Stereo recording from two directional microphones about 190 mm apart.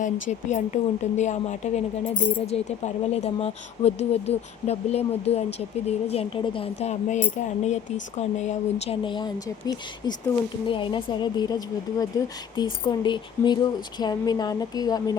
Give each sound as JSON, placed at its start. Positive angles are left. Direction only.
{"t": 0.0, "sound": "a woman's voice", "side_deg": 40}
{"t": 9.0, "sound": "speech", "side_deg": 25}
{"t": 10.7, "sound": "speech", "side_deg": 25}